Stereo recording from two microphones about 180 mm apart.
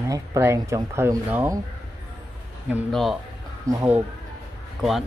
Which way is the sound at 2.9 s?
Centre (ahead or behind).